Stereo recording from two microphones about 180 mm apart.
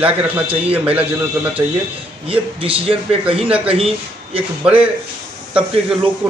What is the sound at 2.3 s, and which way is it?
A man's voice, 30° right (ahead or behind).